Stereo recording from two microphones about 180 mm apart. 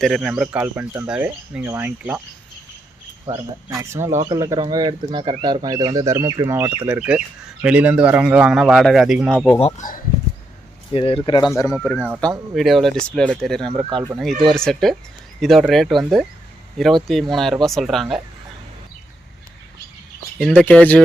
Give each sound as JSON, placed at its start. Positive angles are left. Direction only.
{"t": 0.0, "sound": "speech", "side_deg": 0}
{"t": 3.7, "sound": "speech", "side_deg": -15}
{"t": 9.6, "sound": "speech", "side_deg": 35}
{"t": 10.9, "sound": "speech", "side_deg": 30}
{"t": 11.7, "sound": "speech", "side_deg": 0}
{"t": 20.4, "sound": "speech", "side_deg": 5}